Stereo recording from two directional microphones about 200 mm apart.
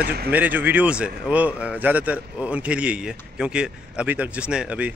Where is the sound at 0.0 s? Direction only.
50° right (ahead or behind).